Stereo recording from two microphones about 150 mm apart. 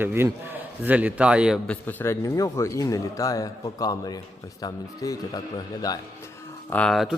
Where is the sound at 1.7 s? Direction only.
15° left (ahead or behind).